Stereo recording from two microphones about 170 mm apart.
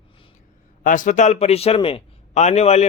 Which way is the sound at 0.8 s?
50° left (ahead or behind).